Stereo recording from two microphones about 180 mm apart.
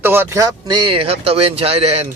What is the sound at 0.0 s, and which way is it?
Speech, 10° right (ahead or behind).